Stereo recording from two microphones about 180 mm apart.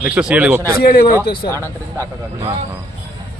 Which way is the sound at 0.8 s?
55° left (ahead or behind).